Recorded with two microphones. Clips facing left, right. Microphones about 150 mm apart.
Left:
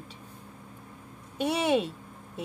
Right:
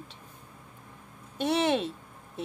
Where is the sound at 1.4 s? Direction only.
10° left (ahead or behind).